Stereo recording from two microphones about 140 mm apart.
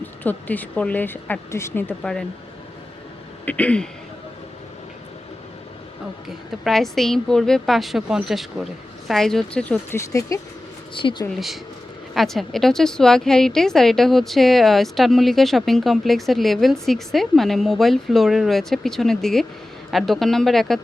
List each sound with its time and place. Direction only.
0.0 s speech: 15° left (ahead or behind)
3.4 s speech: 10° left (ahead or behind)
6.2 s a woman's voice: centre (ahead or behind); by 10.4 s 25° left (ahead or behind)
10.9 s speech: 35° left (ahead or behind)
11.3 s a woman's voice: centre (ahead or behind)